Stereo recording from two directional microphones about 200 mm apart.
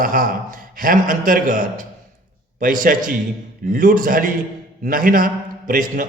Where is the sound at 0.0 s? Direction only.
45° right (ahead or behind).